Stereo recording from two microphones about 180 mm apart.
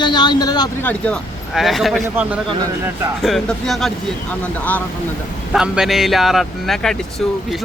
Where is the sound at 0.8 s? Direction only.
5° left (ahead or behind).